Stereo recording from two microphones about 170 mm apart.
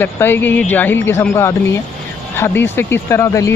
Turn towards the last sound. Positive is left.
turn(degrees=15)  # may be behind; listen again after turning